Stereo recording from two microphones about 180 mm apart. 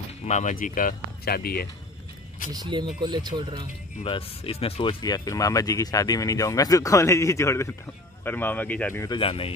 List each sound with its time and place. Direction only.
0.2 s speech: 40° left (ahead or behind); by 1.7 s 60° left (ahead or behind)
2.5 s speech: 25° right (ahead or behind)
4.0 s speech: 30° left (ahead or behind); by 9.1 s 10° left (ahead or behind)
9.1 s speech: 30° left (ahead or behind)